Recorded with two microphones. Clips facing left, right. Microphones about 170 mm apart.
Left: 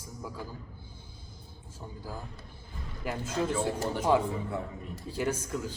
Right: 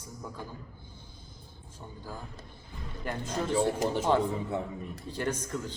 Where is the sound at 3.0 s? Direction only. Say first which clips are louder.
Left 1 dB; 10° left (ahead or behind).